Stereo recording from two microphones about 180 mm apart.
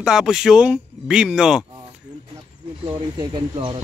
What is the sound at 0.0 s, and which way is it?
Speech, 5° right (ahead or behind).